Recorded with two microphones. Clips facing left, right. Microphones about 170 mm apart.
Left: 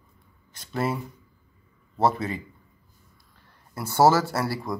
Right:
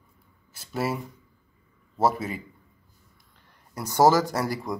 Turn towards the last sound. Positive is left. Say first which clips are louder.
# even
turn(degrees=-20)  # may be behind; listen again after turning